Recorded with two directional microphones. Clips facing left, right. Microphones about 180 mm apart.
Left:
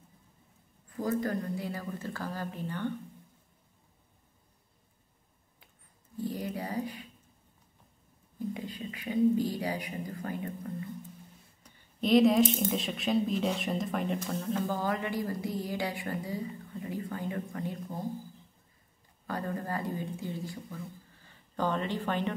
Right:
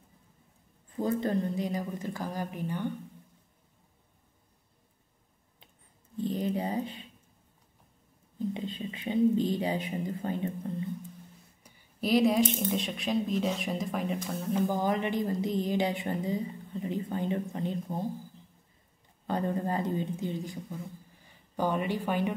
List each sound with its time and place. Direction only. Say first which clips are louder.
0.8 s a woman's voice: right 2 dB; 25° right (ahead or behind)
6.1 s speech: right 4 dB; 20° right (ahead or behind)
8.5 s a woman's voice: right 3 dB; 25° right (ahead or behind)
11.6 s speech: left 1 dB; 5° right (ahead or behind)
14.5 s a woman's voice: right 4 dB; 15° right (ahead or behind)
19.2 s speech: right 5 dB; 20° right (ahead or behind)